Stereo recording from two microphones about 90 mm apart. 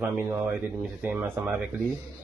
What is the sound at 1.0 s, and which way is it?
Speech, 15° right (ahead or behind).